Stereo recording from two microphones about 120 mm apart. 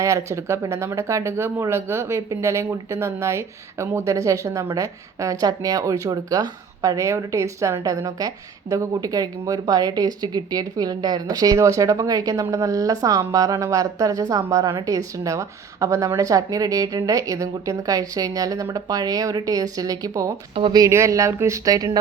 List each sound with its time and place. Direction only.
0.0 s speech: 25° right (ahead or behind)
20.5 s speech: 50° right (ahead or behind)
20.7 s speech: 25° right (ahead or behind)